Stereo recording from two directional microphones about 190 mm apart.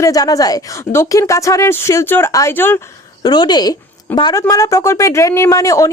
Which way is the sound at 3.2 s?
20° left (ahead or behind).